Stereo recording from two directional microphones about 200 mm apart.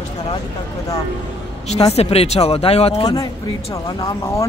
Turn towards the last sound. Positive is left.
turn(degrees=15)  # may be behind; listen again after turning